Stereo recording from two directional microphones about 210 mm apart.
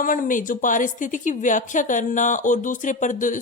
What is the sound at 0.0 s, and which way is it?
Speech, 40° left (ahead or behind).